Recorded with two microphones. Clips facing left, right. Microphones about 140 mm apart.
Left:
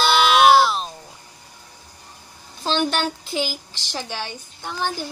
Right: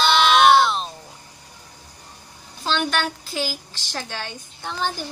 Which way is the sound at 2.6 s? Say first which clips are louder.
Left 2 dB; 30° left (ahead or behind).